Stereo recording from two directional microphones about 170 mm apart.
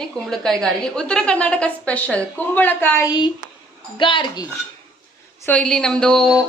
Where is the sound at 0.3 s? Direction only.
5° left (ahead or behind).